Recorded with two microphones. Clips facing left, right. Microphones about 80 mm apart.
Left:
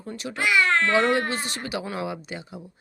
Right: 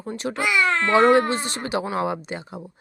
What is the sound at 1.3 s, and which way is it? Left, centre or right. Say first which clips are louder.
Speech: right 4 dB; right.